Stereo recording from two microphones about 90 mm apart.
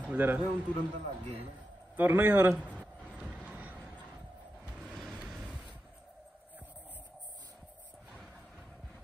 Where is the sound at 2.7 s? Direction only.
15° right (ahead or behind).